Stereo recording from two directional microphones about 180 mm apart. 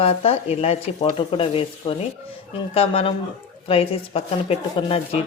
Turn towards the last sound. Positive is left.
turn(degrees=30)  # may be behind; listen again after turning